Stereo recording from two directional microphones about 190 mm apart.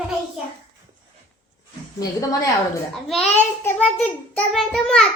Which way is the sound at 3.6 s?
5° left (ahead or behind).